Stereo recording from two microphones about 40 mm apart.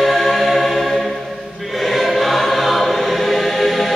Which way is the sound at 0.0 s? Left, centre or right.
Centre.